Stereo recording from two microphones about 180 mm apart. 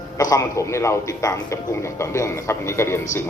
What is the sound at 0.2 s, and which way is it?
A man's voice, 20° left (ahead or behind).